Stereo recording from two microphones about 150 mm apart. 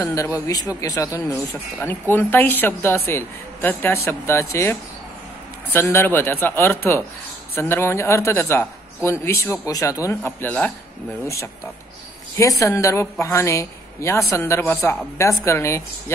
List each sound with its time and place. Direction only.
0.0 s a woman's voice: 20° left (ahead or behind)
12.4 s a woman's voice: 20° left (ahead or behind)